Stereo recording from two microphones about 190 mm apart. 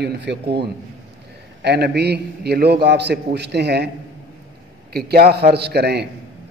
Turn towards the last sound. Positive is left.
turn(degrees=-60)  # may be behind; listen again after turning